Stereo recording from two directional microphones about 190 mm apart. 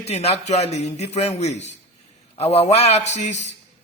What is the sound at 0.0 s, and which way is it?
A man's voice, 35° left (ahead or behind).